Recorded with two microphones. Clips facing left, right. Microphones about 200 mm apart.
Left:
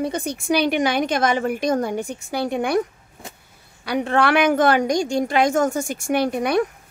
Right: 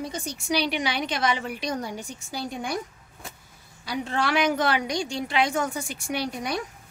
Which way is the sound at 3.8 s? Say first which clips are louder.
Left 8 dB; 65° left (ahead or behind).